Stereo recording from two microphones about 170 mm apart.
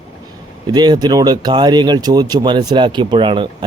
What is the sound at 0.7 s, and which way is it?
Speech, 25° right (ahead or behind).